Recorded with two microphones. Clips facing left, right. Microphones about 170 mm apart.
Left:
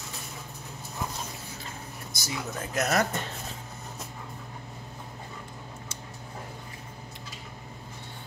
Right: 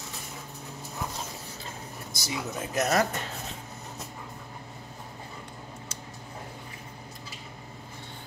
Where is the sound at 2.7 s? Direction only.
15° right (ahead or behind).